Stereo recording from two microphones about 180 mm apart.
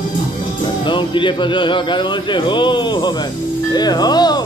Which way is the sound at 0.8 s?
25° left (ahead or behind).